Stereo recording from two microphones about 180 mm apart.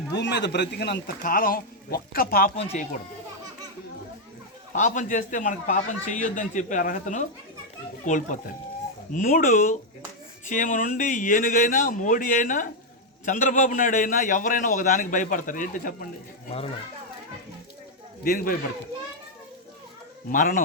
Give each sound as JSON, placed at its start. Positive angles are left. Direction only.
{"t": 0.1, "sound": "speech", "side_deg": 70}
{"t": 4.7, "sound": "a man's voice", "side_deg": 45}
{"t": 18.2, "sound": "a man's voice", "side_deg": 55}
{"t": 20.3, "sound": "a man's voice", "side_deg": 50}